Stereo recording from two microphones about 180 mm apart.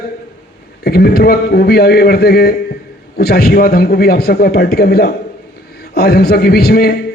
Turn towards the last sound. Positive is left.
turn(degrees=60)  # may be behind; listen again after turning